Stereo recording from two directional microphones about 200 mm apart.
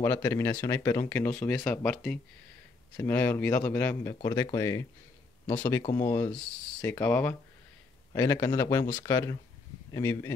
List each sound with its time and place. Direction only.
0.0 s speech: 15° left (ahead or behind)